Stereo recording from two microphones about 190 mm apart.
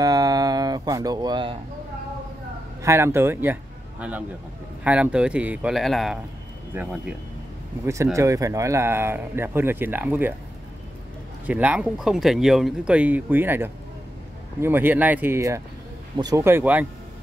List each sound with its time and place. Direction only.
0.0 s a sound: 20° right (ahead or behind)
2.8 s a man's voice: 15° right (ahead or behind)
4.8 s a man's voice: 5° right (ahead or behind)
11.4 s a man's voice: 5° right (ahead or behind)